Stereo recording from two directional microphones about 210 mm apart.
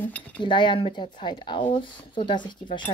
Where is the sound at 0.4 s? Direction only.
20° left (ahead or behind).